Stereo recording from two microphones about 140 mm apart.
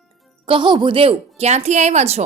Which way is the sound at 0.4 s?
35° right (ahead or behind).